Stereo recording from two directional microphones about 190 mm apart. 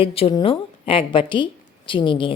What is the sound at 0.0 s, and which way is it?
A woman's voice, 30° left (ahead or behind).